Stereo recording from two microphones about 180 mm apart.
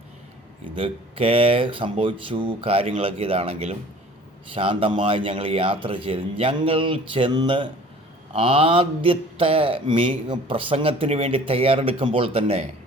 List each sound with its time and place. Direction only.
0.8 s a man's voice: 30° right (ahead or behind)